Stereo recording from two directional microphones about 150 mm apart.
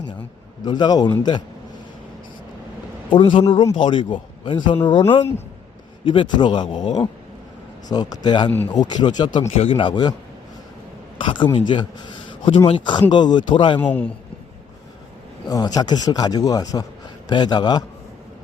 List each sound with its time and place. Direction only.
0.6 s speech: 30° left (ahead or behind)
3.1 s speech: 35° left (ahead or behind)
6.1 s speech: 30° left (ahead or behind)
11.2 s speech: 30° left (ahead or behind)
13.7 s a man's voice: 10° left (ahead or behind)
15.4 s speech: 25° left (ahead or behind)